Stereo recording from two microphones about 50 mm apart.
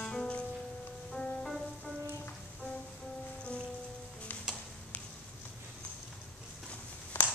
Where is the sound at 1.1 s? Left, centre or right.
Centre.